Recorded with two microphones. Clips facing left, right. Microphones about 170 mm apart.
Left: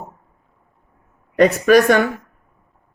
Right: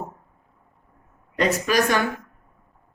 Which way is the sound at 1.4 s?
55° left (ahead or behind).